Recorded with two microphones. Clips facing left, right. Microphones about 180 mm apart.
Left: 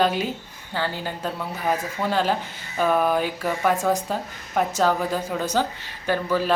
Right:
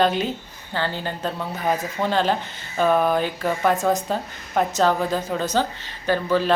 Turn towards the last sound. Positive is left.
turn(degrees=10)  # may be behind; listen again after turning